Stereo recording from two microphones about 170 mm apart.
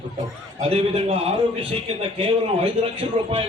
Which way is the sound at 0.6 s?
35° right (ahead or behind).